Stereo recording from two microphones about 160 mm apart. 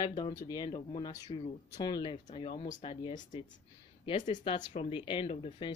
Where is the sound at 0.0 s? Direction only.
25° left (ahead or behind).